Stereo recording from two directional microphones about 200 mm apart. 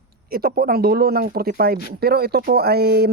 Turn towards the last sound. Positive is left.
turn(degrees=-55)  # may be behind; listen again after turning